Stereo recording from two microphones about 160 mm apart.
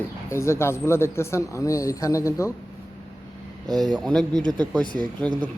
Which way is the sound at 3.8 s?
5° left (ahead or behind).